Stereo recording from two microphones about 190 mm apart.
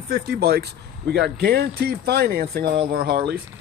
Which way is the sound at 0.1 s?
55° right (ahead or behind).